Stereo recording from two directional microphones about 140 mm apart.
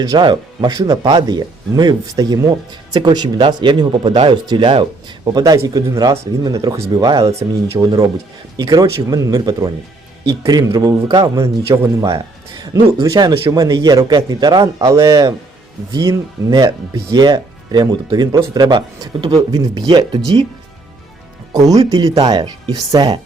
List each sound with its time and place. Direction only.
0.0 s speech: 30° right (ahead or behind)
5.4 s speech: 25° right (ahead or behind)
11.3 s speech: 20° right (ahead or behind)
21.5 s speech: 25° right (ahead or behind)